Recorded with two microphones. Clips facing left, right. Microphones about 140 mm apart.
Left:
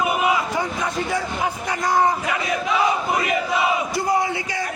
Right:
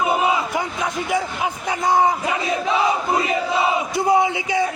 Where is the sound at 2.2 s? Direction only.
25° right (ahead or behind).